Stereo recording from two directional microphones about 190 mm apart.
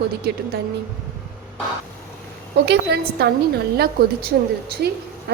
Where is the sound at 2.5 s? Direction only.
65° right (ahead or behind).